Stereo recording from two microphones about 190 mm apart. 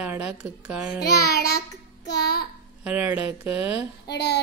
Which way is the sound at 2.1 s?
55° left (ahead or behind).